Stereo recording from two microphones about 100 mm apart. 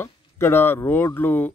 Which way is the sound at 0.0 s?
25° left (ahead or behind).